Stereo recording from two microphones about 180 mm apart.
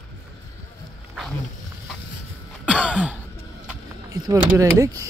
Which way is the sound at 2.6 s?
5° right (ahead or behind).